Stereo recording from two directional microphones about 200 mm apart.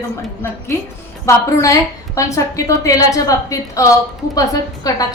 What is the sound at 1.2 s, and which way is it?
A woman's voice, 15° left (ahead or behind).